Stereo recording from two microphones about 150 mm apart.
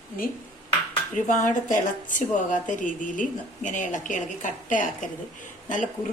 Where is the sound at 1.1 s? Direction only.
55° left (ahead or behind).